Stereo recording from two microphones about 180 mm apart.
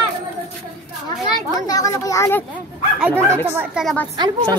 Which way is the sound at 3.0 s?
15° right (ahead or behind).